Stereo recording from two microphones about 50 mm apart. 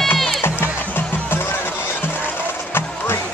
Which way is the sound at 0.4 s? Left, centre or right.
Left.